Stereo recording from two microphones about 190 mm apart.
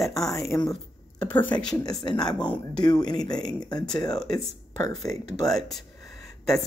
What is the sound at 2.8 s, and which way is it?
Speech, 20° left (ahead or behind).